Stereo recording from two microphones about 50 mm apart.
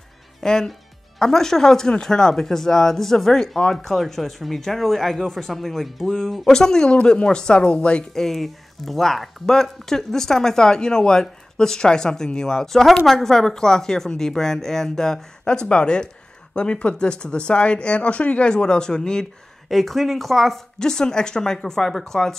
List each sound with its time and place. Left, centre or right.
0.4 s speech: centre
8.1 s speech: centre
19.7 s speech: centre